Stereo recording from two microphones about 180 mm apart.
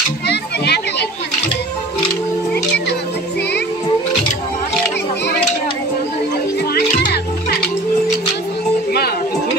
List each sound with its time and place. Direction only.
0.3 s children playing: 65° left (ahead or behind)
6.7 s music: 60° left (ahead or behind)